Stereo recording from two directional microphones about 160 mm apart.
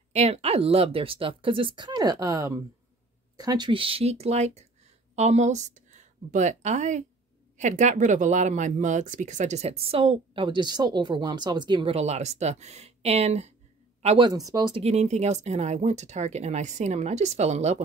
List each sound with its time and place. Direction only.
0.1 s speech: 40° right (ahead or behind)
14.0 s speech: 30° right (ahead or behind)
14.8 s speech: 40° right (ahead or behind)